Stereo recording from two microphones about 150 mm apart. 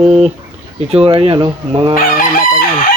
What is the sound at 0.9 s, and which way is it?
Speech, 40° right (ahead or behind).